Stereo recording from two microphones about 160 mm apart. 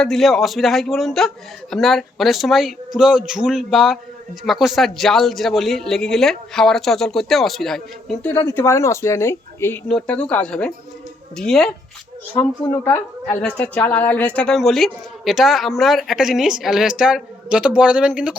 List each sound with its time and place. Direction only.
0.0 s speech: centre (ahead or behind)
8.2 s speech: 15° left (ahead or behind); by 18.3 s 5° right (ahead or behind)